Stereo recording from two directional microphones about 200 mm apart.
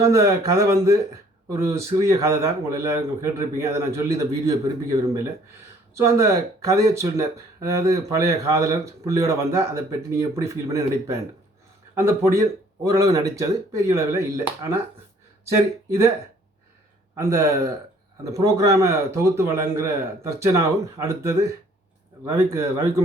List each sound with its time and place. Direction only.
0.0 s speech: 15° right (ahead or behind)
5.9 s speech: 15° right (ahead or behind)
17.2 s speech: 15° right (ahead or behind)